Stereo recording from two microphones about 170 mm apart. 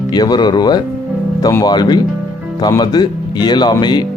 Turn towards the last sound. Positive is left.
turn(degrees=25)  # may be behind; listen again after turning